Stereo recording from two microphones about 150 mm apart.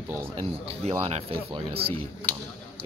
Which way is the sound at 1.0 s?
40° right (ahead or behind).